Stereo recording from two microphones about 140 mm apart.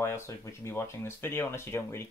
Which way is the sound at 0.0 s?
20° left (ahead or behind).